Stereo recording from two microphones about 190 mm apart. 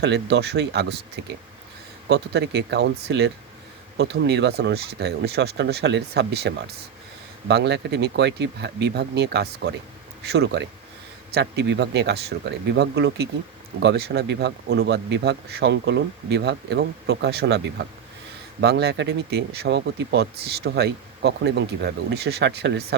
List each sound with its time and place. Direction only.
0.0 s speech: 60° right (ahead or behind)